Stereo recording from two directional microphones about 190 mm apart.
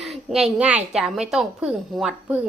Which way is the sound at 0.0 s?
Centre (ahead or behind).